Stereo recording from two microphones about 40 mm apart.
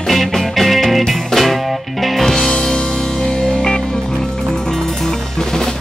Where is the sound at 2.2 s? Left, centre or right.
Centre.